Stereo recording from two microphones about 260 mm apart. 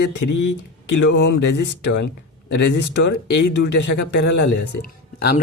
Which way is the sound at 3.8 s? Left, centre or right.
Left.